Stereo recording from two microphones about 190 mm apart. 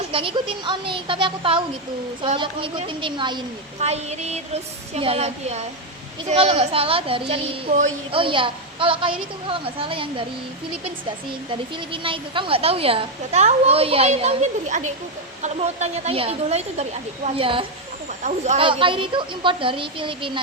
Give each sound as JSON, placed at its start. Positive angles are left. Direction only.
{"t": 0.1, "sound": "a woman's voice", "side_deg": -30}
{"t": 3.8, "sound": "a woman's voice", "side_deg": -35}
{"t": 11.9, "sound": "a woman's voice", "side_deg": -25}
{"t": 18.2, "sound": "a woman's voice", "side_deg": -40}